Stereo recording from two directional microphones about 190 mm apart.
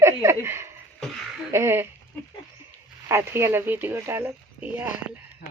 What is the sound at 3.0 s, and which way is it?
Speech, 15° right (ahead or behind).